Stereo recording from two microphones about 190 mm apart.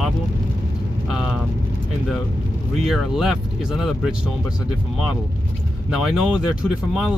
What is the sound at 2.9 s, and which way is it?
Speech, centre (ahead or behind).